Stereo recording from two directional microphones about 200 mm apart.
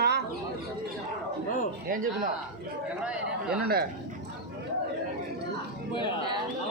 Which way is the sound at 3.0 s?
5° right (ahead or behind).